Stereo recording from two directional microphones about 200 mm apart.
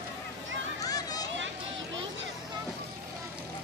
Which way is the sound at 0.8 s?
20° left (ahead or behind).